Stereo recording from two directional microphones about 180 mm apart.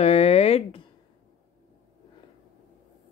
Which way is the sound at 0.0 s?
35° left (ahead or behind).